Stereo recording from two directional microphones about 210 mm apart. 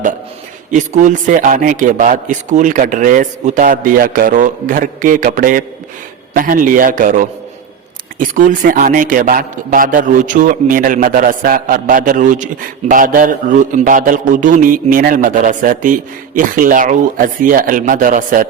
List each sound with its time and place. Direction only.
0.7 s a man's voice: 35° right (ahead or behind)